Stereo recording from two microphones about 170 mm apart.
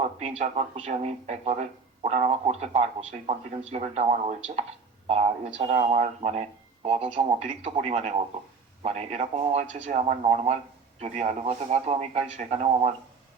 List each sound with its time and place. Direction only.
0.2 s speech: 40° right (ahead or behind)